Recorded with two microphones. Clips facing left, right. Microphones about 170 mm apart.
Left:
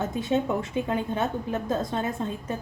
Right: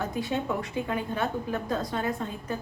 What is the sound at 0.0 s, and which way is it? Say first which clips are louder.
A woman's voice: left 4 dB; 25° left (ahead or behind).